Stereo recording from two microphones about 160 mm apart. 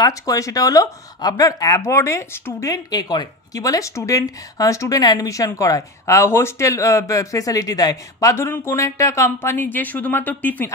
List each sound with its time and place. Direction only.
0.0 s speech: 20° left (ahead or behind)